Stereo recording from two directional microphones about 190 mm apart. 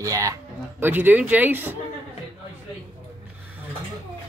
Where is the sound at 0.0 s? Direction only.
15° right (ahead or behind).